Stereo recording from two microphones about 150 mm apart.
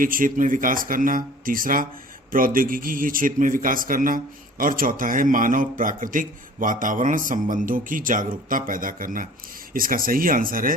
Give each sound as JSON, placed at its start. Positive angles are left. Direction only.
{"t": 0.0, "sound": "a man's voice", "side_deg": -65}